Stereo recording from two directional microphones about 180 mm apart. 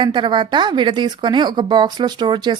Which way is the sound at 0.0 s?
25° right (ahead or behind).